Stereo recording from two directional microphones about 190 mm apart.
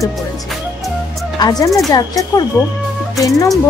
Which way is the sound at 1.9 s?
20° left (ahead or behind).